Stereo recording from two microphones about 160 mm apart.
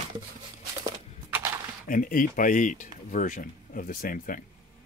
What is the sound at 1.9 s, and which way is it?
Speech, 60° left (ahead or behind).